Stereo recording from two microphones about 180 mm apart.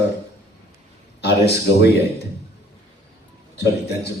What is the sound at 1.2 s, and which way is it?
Speech, 65° left (ahead or behind).